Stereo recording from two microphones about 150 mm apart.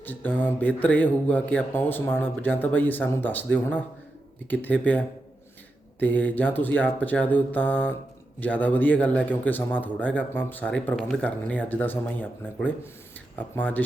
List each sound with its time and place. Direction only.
0.0 s a man's voice: 10° left (ahead or behind)